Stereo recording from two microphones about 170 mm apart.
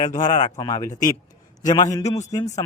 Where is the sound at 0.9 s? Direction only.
50° left (ahead or behind).